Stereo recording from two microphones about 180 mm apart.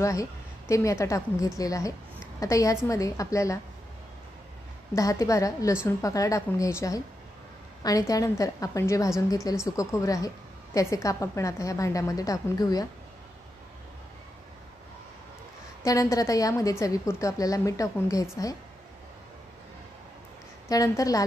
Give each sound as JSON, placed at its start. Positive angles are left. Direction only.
{"t": 0.0, "sound": "a woman's voice", "side_deg": 15}
{"t": 4.9, "sound": "a woman's voice", "side_deg": 20}
{"t": 8.1, "sound": "a woman's voice", "side_deg": 20}
{"t": 15.8, "sound": "a woman's voice", "side_deg": 20}
{"t": 20.6, "sound": "a woman's voice", "side_deg": 20}